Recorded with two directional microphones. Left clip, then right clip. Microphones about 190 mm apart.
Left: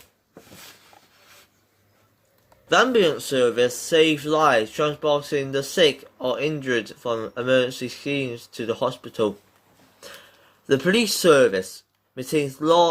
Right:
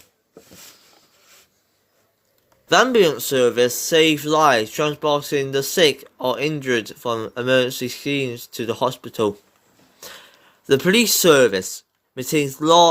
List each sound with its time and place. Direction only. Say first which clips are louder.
2.6 s speech: right 3 dB; 55° right (ahead or behind)
10.0 s a sound: right 3 dB; 50° right (ahead or behind)
10.7 s speech: right 4 dB; 50° right (ahead or behind)